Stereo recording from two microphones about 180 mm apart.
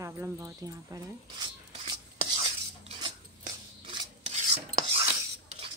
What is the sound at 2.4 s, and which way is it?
Cutlery, 30° right (ahead or behind).